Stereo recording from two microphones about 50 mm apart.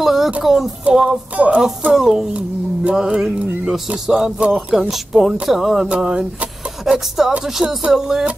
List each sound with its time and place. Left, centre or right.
0.0 s a sound: centre
0.9 s music: right
2.0 s music: centre
3.7 s speech: centre
4.4 s music: right
4.7 s speech: centre
5.9 s music: centre